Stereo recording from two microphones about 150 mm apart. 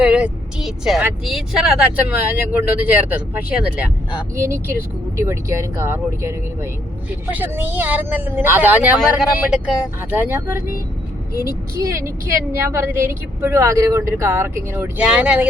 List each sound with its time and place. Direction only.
0.0 s a woman's voice: 5° right (ahead or behind)
12.5 s speech: 20° right (ahead or behind)